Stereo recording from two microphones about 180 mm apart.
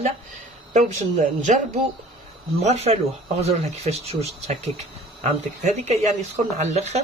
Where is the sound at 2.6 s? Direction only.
40° right (ahead or behind).